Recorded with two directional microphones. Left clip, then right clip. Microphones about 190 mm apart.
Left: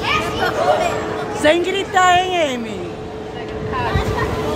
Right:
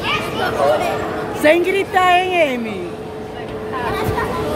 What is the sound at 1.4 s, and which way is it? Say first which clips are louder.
A woman's voice: right 2 dB; 15° right (ahead or behind).